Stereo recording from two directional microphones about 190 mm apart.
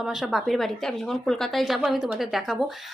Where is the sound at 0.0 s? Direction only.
Centre (ahead or behind).